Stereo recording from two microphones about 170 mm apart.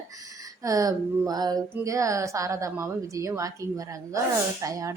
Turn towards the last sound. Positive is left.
turn(degrees=-20)  # may be behind; listen again after turning